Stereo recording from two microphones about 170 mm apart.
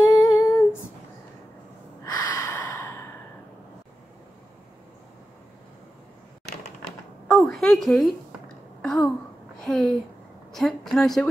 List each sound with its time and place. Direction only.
0.0 s humming: 20° left (ahead or behind)
2.0 s gasp: 20° left (ahead or behind)
7.2 s a sound: centre (ahead or behind)